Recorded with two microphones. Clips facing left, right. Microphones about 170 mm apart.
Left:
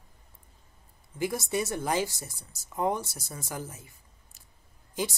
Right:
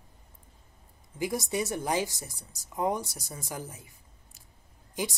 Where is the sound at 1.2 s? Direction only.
15° right (ahead or behind).